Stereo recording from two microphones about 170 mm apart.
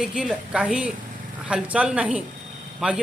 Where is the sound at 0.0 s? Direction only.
5° right (ahead or behind).